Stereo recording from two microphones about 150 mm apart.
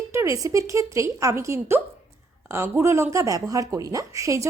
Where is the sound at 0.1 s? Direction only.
20° right (ahead or behind).